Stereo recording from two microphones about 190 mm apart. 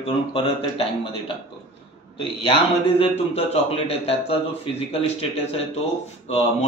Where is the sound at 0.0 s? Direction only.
30° left (ahead or behind).